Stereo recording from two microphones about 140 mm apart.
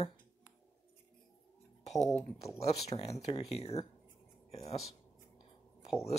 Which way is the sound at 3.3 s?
50° left (ahead or behind).